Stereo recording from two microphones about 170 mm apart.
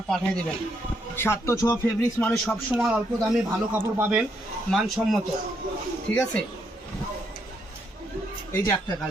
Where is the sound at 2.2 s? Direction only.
5° left (ahead or behind).